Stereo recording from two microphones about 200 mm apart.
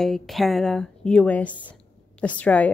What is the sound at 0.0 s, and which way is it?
A woman's voice, centre (ahead or behind).